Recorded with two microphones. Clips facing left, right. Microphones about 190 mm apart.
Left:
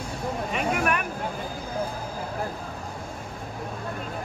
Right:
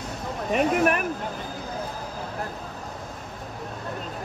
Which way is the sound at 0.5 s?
40° right (ahead or behind).